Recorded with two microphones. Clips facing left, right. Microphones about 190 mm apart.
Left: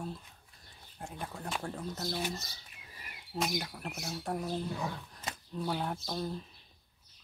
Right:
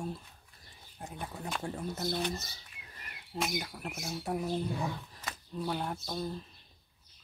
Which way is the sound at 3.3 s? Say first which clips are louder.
Left 1 dB; centre (ahead or behind).